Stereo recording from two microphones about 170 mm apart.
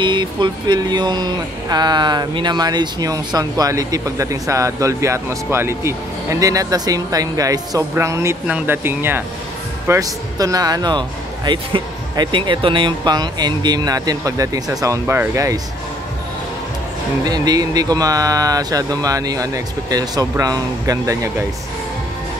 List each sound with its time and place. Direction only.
0.0 s speech: 25° right (ahead or behind)
17.2 s speech: 25° right (ahead or behind)